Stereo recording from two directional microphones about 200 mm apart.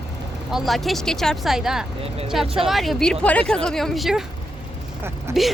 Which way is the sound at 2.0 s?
30° right (ahead or behind).